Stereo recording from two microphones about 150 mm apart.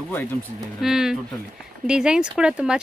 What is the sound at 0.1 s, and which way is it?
Speech, 10° left (ahead or behind).